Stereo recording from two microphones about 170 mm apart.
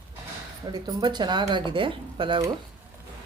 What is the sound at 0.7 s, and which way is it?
Speech, 25° right (ahead or behind).